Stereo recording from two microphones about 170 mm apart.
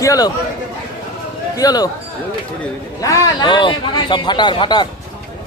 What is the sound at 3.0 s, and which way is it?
Speech, 20° left (ahead or behind).